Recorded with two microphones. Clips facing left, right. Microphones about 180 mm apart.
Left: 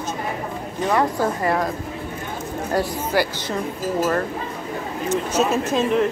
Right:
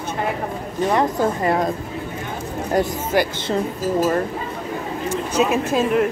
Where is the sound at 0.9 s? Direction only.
25° right (ahead or behind).